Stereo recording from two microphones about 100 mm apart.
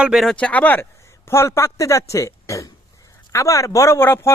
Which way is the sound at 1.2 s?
25° left (ahead or behind).